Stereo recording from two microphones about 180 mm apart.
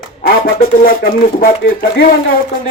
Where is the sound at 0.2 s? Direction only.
55° left (ahead or behind).